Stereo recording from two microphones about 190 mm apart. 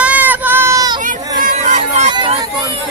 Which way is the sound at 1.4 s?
40° right (ahead or behind).